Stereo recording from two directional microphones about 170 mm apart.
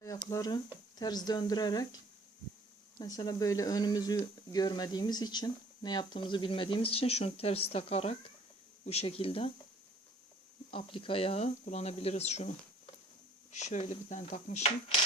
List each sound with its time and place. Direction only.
0.3 s speech: 20° left (ahead or behind)
3.0 s speech: 20° left (ahead or behind)
10.7 s speech: 30° left (ahead or behind)